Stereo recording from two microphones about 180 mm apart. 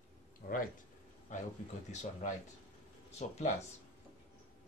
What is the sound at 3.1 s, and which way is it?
Speech, 40° left (ahead or behind).